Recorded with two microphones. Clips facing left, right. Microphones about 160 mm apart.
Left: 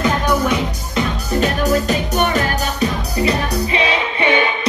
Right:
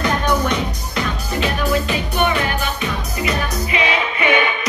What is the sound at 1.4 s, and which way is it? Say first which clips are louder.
Music: left 2 dB; 40° left (ahead or behind).